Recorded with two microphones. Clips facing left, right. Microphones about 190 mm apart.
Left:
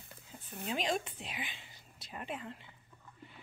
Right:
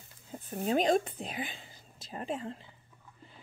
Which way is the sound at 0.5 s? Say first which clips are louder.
Right 9 dB; 50° right (ahead or behind).